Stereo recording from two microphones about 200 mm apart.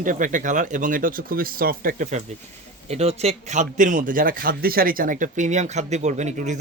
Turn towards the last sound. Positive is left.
turn(degrees=-35)  # may be behind; listen again after turning